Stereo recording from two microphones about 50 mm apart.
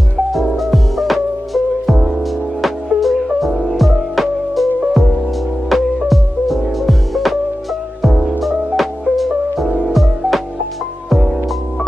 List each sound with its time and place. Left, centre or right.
0.6 s music: centre